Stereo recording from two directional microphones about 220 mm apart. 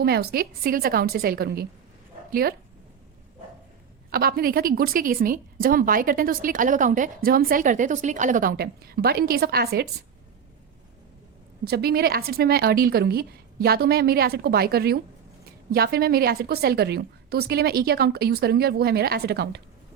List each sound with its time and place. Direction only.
0.0 s a woman's voice: 45° right (ahead or behind)
4.1 s a woman's voice: 45° right (ahead or behind)
11.6 s a woman's voice: 45° right (ahead or behind)